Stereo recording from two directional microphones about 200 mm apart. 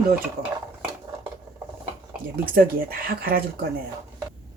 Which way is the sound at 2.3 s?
45° right (ahead or behind).